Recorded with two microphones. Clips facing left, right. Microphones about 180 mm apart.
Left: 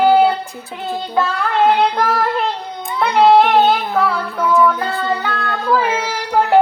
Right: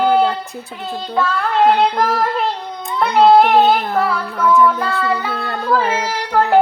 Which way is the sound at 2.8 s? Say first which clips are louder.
Right 1 dB; centre (ahead or behind).